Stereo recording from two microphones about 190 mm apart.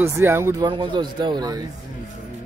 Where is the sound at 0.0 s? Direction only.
15° right (ahead or behind).